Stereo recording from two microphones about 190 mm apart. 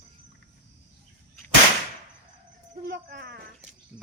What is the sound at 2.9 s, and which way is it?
Speech, 60° right (ahead or behind).